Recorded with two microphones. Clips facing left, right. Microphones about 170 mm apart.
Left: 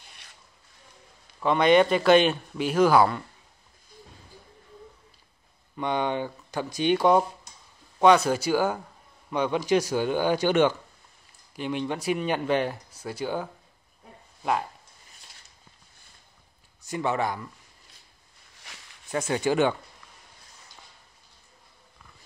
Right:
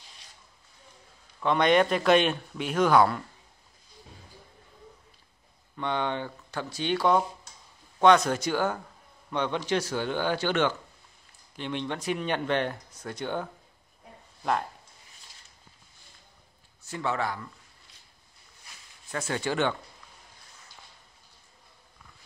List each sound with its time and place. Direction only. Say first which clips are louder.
1.4 s speech: left 3 dB; 5° left (ahead or behind)
5.8 s speech: left 3 dB; 15° left (ahead or behind)
16.8 s speech: left 3 dB; 15° left (ahead or behind)
18.6 s a sound: left 4 dB; 80° left
19.1 s speech: left 5 dB; 15° left (ahead or behind)